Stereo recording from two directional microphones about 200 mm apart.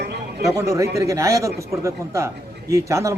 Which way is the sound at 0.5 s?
15° right (ahead or behind).